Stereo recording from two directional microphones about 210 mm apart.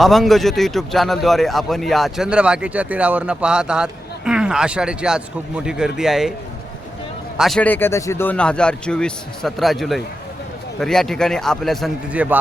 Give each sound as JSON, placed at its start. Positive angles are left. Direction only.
{"t": 0.0, "sound": "speech", "side_deg": 0}
{"t": 7.3, "sound": "speech", "side_deg": 0}